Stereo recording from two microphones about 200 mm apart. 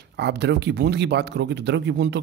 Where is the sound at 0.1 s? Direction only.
55° right (ahead or behind).